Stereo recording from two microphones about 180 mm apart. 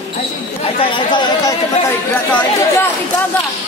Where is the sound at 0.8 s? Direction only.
30° left (ahead or behind).